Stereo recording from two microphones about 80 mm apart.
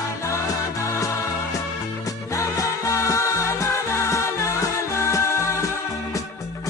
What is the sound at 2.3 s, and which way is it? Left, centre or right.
Music, left.